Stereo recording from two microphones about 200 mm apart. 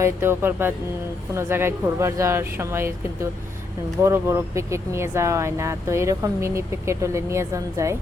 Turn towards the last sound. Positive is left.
turn(degrees=-15)  # may be behind; listen again after turning